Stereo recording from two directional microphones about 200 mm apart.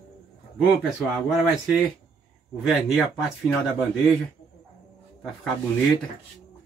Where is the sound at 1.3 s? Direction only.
Centre (ahead or behind).